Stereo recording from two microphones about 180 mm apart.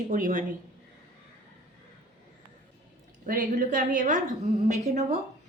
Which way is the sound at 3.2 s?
45° right (ahead or behind).